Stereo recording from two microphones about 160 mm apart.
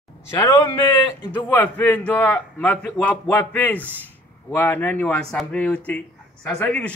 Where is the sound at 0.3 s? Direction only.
20° left (ahead or behind).